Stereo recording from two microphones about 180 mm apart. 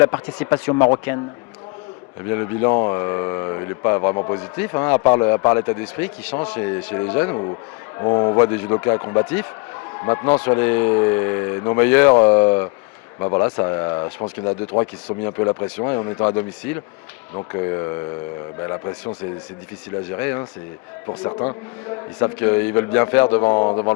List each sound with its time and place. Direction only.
0.0 s speech: 15° left (ahead or behind)
2.3 s speech: 15° left (ahead or behind)
7.9 s speech: 25° left (ahead or behind)
20.1 s speech: 15° left (ahead or behind)
21.1 s speech: 25° left (ahead or behind)
22.2 s speech: 15° left (ahead or behind)
23.4 s speech: 25° left (ahead or behind)